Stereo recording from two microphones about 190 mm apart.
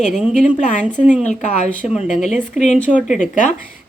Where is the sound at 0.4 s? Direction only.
40° left (ahead or behind).